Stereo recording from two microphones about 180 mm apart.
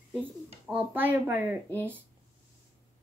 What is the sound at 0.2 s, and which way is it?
Speech, 10° right (ahead or behind).